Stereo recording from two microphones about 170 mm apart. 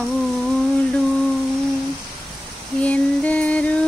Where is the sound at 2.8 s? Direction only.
10° left (ahead or behind).